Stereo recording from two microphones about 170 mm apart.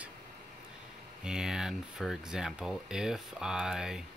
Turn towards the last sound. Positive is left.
turn(degrees=-5)  # may be behind; listen again after turning